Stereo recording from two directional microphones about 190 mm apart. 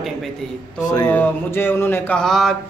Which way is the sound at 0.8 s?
20° left (ahead or behind).